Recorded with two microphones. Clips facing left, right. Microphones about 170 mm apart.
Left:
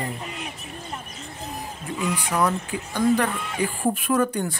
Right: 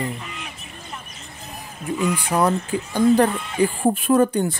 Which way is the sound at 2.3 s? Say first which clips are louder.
Right 3 dB; 30° right (ahead or behind).